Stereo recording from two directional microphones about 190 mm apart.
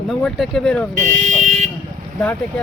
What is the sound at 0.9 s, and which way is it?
Speech, 40° right (ahead or behind).